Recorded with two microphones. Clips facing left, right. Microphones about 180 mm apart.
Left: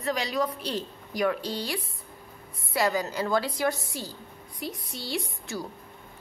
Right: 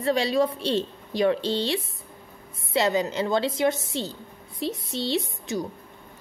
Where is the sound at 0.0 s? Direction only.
30° right (ahead or behind).